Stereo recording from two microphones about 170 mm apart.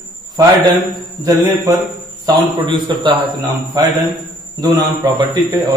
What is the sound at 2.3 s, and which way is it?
Speech, 30° right (ahead or behind).